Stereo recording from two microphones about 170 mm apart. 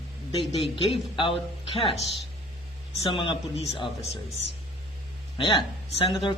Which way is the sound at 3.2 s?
30° left (ahead or behind).